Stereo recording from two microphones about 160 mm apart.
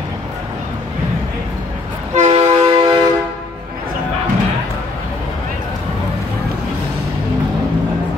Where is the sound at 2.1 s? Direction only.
45° right (ahead or behind).